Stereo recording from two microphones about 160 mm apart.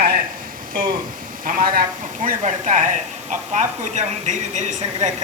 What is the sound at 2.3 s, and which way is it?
Speech, 50° right (ahead or behind).